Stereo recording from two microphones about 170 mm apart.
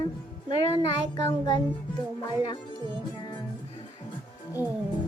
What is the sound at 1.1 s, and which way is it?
Speech, 25° left (ahead or behind).